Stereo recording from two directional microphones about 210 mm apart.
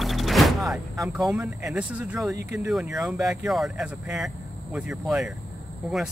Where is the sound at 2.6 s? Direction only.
Centre (ahead or behind).